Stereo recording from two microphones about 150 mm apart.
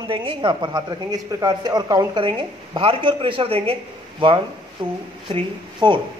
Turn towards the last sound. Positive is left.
turn(degrees=-35)  # may be behind; listen again after turning